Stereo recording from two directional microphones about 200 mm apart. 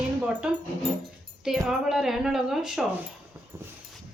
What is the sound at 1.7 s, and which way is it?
Speech, centre (ahead or behind).